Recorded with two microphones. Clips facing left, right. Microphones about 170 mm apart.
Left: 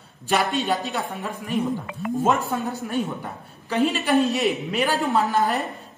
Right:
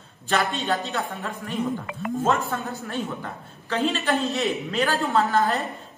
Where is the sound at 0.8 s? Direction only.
Centre (ahead or behind).